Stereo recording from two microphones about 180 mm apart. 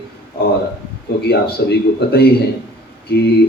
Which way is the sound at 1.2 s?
65° left (ahead or behind).